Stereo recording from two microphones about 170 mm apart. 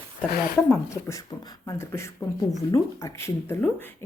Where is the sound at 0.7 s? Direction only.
20° left (ahead or behind).